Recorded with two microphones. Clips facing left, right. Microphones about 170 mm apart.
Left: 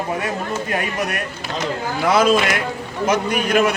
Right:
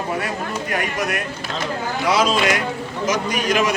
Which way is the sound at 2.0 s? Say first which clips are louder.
Left 3 dB; 55° left (ahead or behind).